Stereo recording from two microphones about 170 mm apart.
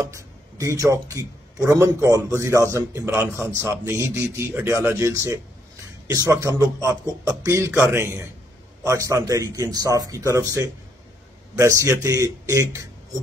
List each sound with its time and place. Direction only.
0.0 s a man's voice: 20° right (ahead or behind)